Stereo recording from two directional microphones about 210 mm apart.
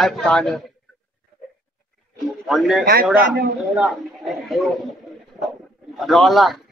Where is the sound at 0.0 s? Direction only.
Centre (ahead or behind).